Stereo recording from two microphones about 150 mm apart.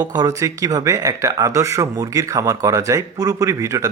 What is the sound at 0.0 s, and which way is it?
Speech, 25° right (ahead or behind).